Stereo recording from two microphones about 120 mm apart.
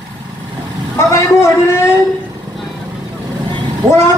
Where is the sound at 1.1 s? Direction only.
20° left (ahead or behind).